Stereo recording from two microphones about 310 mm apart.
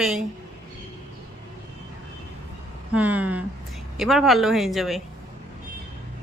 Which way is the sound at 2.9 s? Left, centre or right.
Centre.